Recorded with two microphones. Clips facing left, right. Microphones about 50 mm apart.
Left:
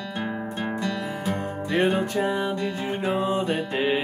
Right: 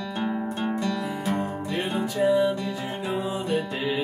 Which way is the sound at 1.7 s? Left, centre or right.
Left.